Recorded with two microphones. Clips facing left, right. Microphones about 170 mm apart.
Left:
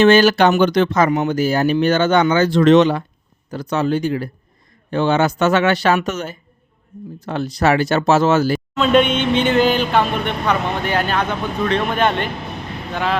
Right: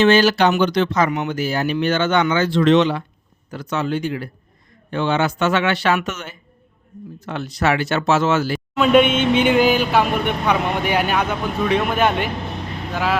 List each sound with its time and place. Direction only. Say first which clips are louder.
0.0 s speech: left 3 dB; 50° left (ahead or behind)
8.8 s speech: right 1 dB; 10° right (ahead or behind)